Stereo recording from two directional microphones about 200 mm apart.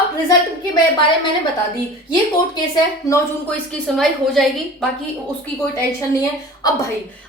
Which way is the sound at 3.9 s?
Centre (ahead or behind).